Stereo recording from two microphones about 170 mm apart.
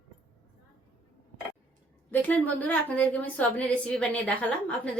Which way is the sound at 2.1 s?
10° left (ahead or behind).